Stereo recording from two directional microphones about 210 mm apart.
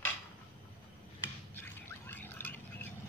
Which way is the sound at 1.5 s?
10° left (ahead or behind).